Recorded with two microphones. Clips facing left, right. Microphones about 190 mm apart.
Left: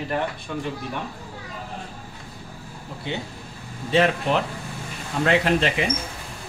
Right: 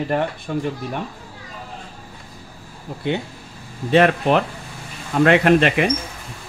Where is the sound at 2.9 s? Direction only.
50° right (ahead or behind).